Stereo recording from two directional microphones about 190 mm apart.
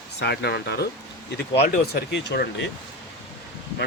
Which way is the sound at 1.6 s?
35° left (ahead or behind).